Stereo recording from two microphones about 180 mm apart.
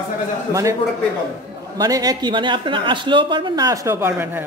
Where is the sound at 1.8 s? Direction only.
20° right (ahead or behind).